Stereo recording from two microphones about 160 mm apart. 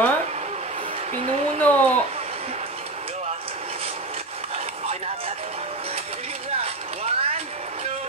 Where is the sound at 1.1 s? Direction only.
45° right (ahead or behind).